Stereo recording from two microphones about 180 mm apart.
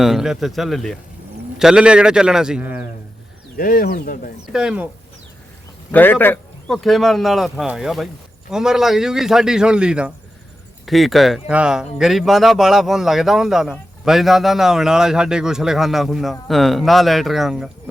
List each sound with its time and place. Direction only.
0.0 s speech: centre (ahead or behind)
3.6 s speech: 50° left (ahead or behind)
4.5 s speech: 5° right (ahead or behind)
5.9 s speech: 10° left (ahead or behind)